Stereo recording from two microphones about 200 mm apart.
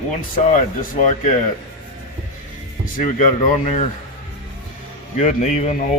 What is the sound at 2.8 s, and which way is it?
Speech, 40° left (ahead or behind).